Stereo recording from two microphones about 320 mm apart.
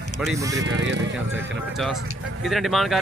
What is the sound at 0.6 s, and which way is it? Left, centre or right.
Speech, right.